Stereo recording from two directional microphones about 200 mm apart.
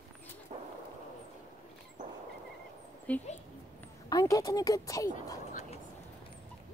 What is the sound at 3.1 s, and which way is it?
Speech, 5° left (ahead or behind).